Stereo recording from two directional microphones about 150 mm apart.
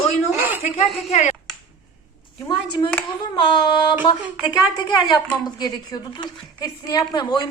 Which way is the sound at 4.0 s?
10° right (ahead or behind).